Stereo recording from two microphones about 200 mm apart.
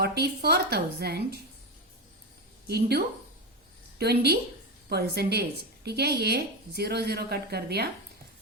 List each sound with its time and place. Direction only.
0.0 s a woman's voice: 55° right (ahead or behind)
2.6 s a woman's voice: 55° right (ahead or behind)